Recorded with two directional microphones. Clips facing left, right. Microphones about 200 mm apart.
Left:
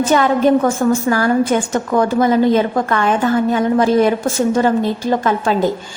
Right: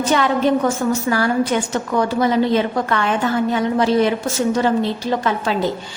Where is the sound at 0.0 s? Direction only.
45° left (ahead or behind).